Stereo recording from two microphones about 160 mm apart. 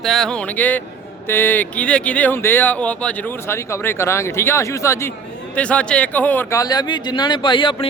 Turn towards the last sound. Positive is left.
turn(degrees=30)  # may be behind; listen again after turning